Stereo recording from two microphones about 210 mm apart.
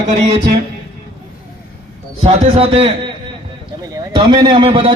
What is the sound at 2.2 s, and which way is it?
A man's voice, 25° right (ahead or behind).